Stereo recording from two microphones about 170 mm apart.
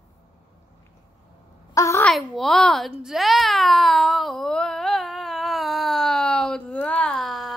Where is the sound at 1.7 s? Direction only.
15° left (ahead or behind).